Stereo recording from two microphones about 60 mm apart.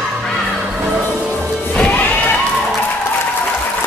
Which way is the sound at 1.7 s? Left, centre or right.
Centre.